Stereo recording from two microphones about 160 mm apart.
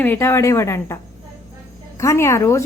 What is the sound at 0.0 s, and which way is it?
Speech, 15° left (ahead or behind).